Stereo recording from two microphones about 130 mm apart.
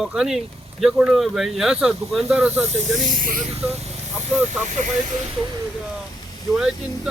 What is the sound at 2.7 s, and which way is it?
Speech, 80° right.